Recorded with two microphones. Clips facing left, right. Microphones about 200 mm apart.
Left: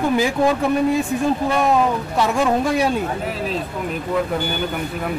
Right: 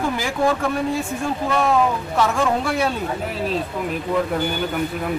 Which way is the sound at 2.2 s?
15° left (ahead or behind).